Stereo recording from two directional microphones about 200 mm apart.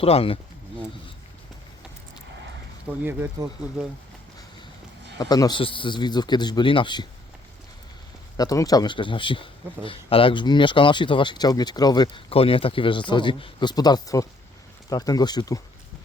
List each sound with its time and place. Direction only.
0.0 s speech: 30° left (ahead or behind)
3.0 s speech: 10° right (ahead or behind)
5.1 s speech: 20° left (ahead or behind)
8.4 s speech: 20° left (ahead or behind)